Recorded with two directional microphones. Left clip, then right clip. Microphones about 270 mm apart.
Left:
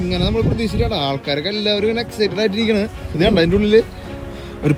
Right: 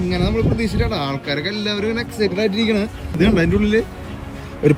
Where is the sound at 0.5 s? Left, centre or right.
Right.